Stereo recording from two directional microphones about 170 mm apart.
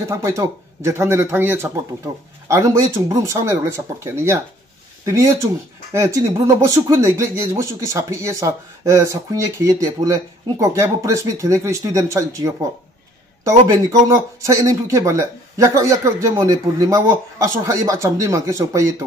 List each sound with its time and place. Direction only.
0.1 s speech: 15° right (ahead or behind)